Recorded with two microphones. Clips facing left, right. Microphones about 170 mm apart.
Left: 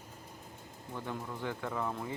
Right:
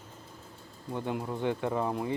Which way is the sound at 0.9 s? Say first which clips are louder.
Right 7 dB; 20° right (ahead or behind).